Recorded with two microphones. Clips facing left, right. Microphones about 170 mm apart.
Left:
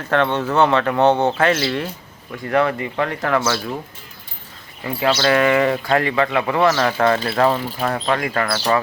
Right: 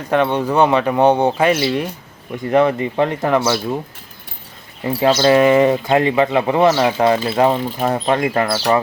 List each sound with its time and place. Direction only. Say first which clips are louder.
0.1 s speech: right 2 dB; 15° right (ahead or behind)
4.8 s speech: right 4 dB; 25° right (ahead or behind)